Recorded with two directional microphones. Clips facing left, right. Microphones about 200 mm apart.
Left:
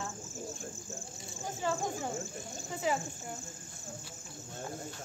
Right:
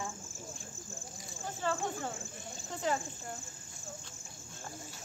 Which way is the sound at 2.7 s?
10° left (ahead or behind).